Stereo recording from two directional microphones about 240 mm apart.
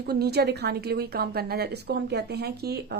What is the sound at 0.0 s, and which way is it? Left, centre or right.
A woman's voice, right.